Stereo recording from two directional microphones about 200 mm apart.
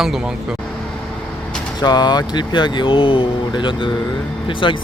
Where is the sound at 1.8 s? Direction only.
20° left (ahead or behind).